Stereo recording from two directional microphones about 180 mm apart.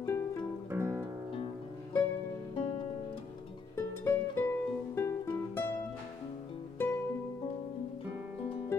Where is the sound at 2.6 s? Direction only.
30° left (ahead or behind).